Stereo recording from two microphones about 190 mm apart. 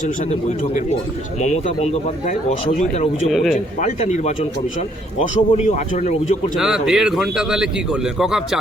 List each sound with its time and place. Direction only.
1.4 s speech: 40° left (ahead or behind)
3.2 s a man's voice: centre (ahead or behind)
3.8 s speech: 40° left (ahead or behind)
5.2 s speech: 40° left (ahead or behind)
6.6 s a man's voice: centre (ahead or behind)